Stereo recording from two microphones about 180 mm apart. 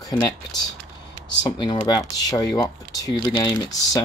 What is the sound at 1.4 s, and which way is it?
Speech, 25° left (ahead or behind).